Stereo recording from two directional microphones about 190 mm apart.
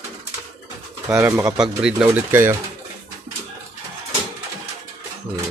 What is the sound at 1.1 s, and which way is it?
Speech, 15° right (ahead or behind).